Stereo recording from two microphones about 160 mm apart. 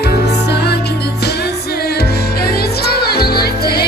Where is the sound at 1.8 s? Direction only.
80° left.